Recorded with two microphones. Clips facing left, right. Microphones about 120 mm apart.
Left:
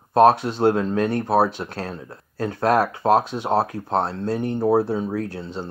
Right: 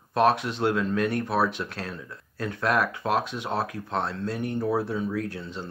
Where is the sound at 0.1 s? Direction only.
35° left (ahead or behind).